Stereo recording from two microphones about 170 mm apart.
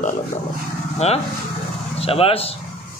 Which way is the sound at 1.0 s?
40° left (ahead or behind).